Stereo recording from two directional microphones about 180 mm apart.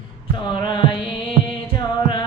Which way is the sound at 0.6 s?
25° left (ahead or behind).